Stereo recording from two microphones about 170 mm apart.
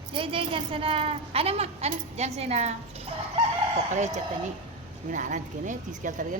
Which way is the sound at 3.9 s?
45° right (ahead or behind).